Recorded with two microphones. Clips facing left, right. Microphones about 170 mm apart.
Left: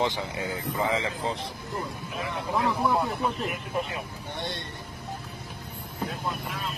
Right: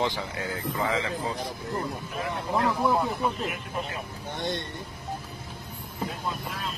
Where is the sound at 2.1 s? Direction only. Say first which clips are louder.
Even; centre (ahead or behind).